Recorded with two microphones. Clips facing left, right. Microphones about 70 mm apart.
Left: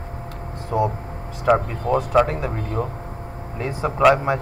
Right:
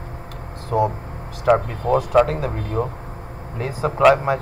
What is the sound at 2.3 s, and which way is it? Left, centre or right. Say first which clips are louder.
Speech: right 1 dB; right.